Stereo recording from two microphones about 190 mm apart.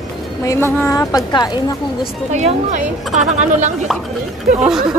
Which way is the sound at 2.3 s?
35° right (ahead or behind).